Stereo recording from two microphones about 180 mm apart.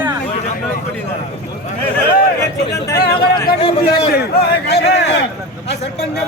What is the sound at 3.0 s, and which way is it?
Speech, 60° left (ahead or behind).